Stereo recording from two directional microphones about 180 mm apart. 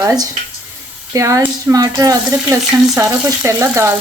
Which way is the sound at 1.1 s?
15° right (ahead or behind).